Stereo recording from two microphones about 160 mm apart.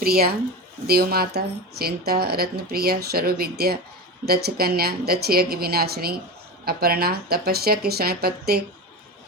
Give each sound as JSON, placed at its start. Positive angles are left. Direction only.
{"t": 0.0, "sound": "speech", "side_deg": -70}